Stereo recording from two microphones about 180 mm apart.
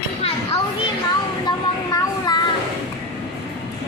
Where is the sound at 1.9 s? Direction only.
20° left (ahead or behind).